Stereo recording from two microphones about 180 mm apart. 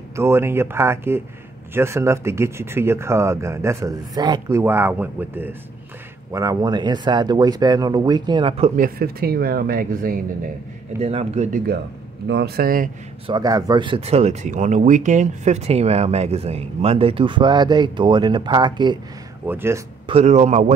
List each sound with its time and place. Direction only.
0.1 s speech: 15° right (ahead or behind); by 8.8 s 35° right (ahead or behind)
8.8 s speech: 55° right (ahead or behind)
11.0 s speech: 35° right (ahead or behind)
11.5 s speech: 60° right (ahead or behind)
13.3 s speech: 20° right (ahead or behind)
19.4 s speech: 10° right (ahead or behind)
20.1 s speech: 35° right (ahead or behind)